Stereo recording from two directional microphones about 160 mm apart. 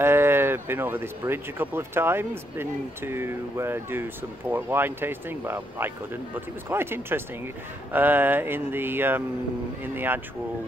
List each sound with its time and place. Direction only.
0.0 s speech: 15° right (ahead or behind)